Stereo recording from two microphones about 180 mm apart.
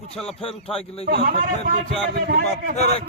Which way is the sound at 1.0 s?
50° right (ahead or behind).